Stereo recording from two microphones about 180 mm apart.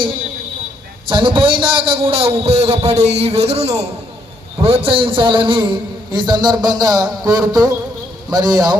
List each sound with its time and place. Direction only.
1.0 s a man's voice: 30° right (ahead or behind)